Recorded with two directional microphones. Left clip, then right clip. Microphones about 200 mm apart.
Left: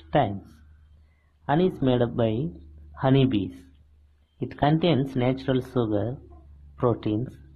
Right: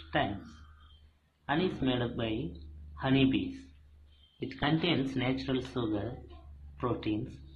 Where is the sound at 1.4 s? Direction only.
40° left (ahead or behind).